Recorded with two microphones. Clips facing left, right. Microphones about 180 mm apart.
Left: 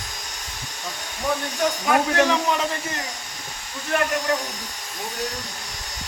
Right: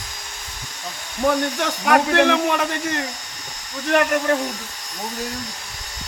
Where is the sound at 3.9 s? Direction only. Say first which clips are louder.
Right 4 dB; 50° right (ahead or behind).